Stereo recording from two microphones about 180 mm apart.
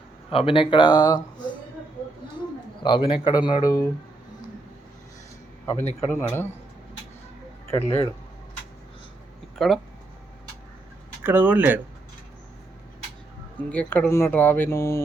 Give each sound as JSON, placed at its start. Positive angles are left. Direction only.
{"t": 0.3, "sound": "speech", "side_deg": 30}
{"t": 2.8, "sound": "speech", "side_deg": 25}
{"t": 6.1, "sound": "speech", "side_deg": 10}
{"t": 7.7, "sound": "speech", "side_deg": 15}
{"t": 9.6, "sound": "speech", "side_deg": 0}
{"t": 11.2, "sound": "speech", "side_deg": -10}
{"t": 13.7, "sound": "speech", "side_deg": 10}